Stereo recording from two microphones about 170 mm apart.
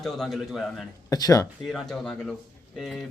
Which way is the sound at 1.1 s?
20° left (ahead or behind).